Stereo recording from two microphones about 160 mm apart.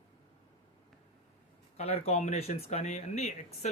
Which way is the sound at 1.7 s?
40° left (ahead or behind).